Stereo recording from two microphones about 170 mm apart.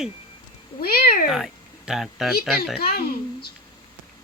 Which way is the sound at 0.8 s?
60° left (ahead or behind).